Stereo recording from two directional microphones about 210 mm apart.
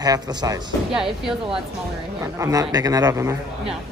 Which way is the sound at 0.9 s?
Centre (ahead or behind).